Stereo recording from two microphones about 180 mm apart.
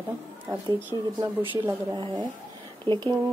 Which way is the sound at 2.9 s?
25° right (ahead or behind).